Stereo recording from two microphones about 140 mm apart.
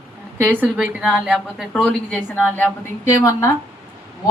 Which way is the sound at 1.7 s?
10° left (ahead or behind).